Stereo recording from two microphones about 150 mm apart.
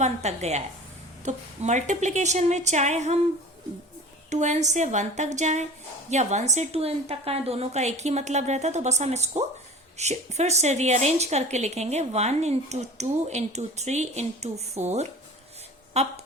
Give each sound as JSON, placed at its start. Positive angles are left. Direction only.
{"t": 0.0, "sound": "a woman's voice", "side_deg": -45}
{"t": 4.3, "sound": "a woman's voice", "side_deg": -50}